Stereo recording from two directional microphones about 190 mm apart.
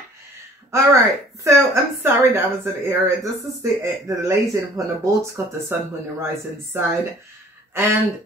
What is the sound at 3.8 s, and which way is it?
Speech, 15° right (ahead or behind).